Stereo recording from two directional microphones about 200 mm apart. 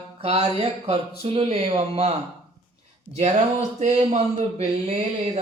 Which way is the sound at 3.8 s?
35° right (ahead or behind).